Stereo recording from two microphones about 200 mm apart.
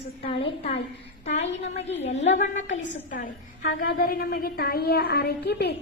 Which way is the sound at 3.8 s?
45° left (ahead or behind).